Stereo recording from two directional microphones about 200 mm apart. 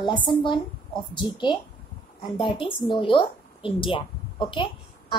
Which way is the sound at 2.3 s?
25° left (ahead or behind).